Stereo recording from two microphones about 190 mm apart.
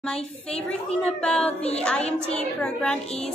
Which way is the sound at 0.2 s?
30° left (ahead or behind).